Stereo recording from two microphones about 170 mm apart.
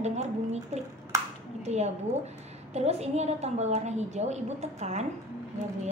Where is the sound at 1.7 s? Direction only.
40° right (ahead or behind).